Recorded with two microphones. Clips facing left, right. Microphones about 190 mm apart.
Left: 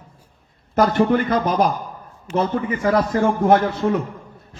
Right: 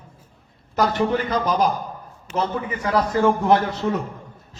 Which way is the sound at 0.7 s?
55° left (ahead or behind).